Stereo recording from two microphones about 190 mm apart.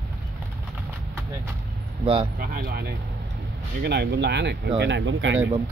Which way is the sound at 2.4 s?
50° right (ahead or behind).